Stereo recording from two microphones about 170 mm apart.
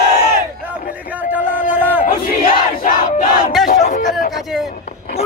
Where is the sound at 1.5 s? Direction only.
10° right (ahead or behind).